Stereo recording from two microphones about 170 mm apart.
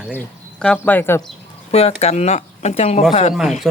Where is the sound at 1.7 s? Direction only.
40° left (ahead or behind).